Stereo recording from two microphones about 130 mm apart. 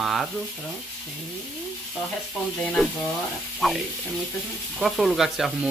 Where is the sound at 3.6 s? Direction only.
5° left (ahead or behind).